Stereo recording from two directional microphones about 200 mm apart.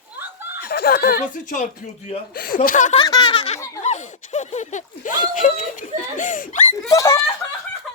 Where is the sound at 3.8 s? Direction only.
35° left (ahead or behind).